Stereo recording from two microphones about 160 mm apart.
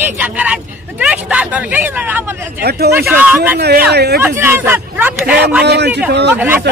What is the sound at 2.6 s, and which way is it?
Speech, 85° right.